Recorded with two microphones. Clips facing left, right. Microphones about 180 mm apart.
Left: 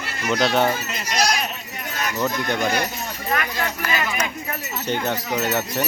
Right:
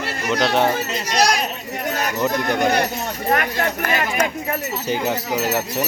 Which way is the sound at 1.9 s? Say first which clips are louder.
Right 3 dB; 40° right (ahead or behind).